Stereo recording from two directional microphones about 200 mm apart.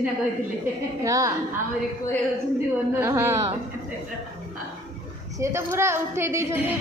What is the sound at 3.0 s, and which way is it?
Speech, 10° right (ahead or behind).